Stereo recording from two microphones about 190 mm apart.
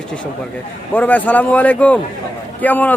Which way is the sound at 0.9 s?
10° left (ahead or behind).